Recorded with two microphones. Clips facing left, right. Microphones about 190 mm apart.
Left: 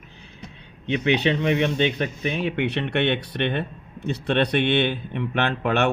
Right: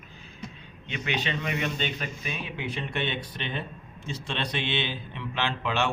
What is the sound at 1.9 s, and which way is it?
Speech, 70° left (ahead or behind).